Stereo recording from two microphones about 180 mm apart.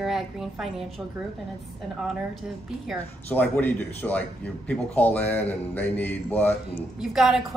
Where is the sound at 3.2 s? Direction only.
10° left (ahead or behind).